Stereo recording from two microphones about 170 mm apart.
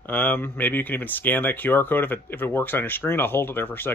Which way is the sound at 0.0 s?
10° left (ahead or behind).